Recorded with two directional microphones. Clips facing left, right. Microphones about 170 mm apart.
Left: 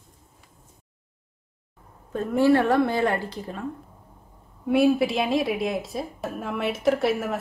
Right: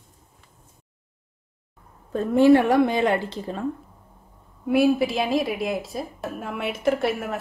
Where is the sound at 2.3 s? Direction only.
20° right (ahead or behind).